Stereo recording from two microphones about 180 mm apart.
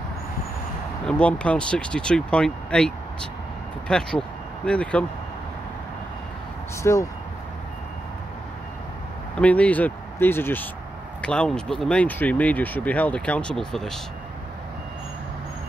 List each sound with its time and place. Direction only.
1.0 s speech: 5° left (ahead or behind)
6.8 s speech: 15° left (ahead or behind)
9.4 s speech: 10° left (ahead or behind)